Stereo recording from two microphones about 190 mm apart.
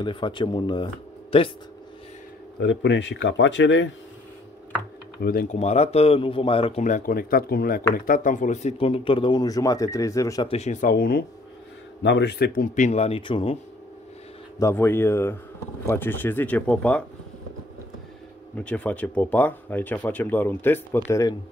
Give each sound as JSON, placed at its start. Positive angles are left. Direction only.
{"t": 0.0, "sound": "speech", "side_deg": 25}
{"t": 2.6, "sound": "speech", "side_deg": 70}
{"t": 5.2, "sound": "speech", "side_deg": 50}
{"t": 5.6, "sound": "speech", "side_deg": 35}
{"t": 10.5, "sound": "speech", "side_deg": 40}
{"t": 12.0, "sound": "speech", "side_deg": 60}
{"t": 12.7, "sound": "speech", "side_deg": 35}
{"t": 14.6, "sound": "speech", "side_deg": 10}
{"t": 18.6, "sound": "speech", "side_deg": 5}